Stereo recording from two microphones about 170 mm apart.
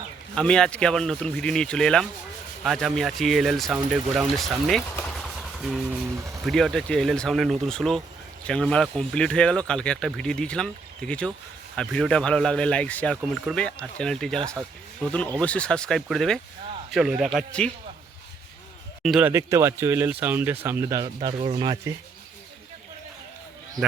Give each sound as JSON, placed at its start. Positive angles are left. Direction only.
{"t": 0.3, "sound": "speech", "side_deg": 5}
{"t": 5.0, "sound": "a sound", "side_deg": 0}
{"t": 6.4, "sound": "speech", "side_deg": 0}
{"t": 19.0, "sound": "speech", "side_deg": 0}
{"t": 19.3, "sound": "speech", "side_deg": -15}